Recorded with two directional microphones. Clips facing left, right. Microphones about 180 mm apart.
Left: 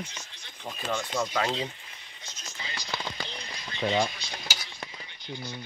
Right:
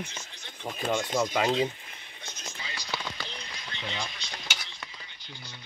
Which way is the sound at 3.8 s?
45° left (ahead or behind).